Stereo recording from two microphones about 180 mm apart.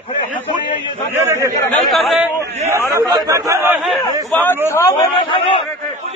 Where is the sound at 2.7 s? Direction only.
15° right (ahead or behind).